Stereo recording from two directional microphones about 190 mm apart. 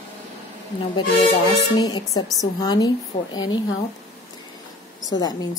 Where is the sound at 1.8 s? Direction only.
20° left (ahead or behind).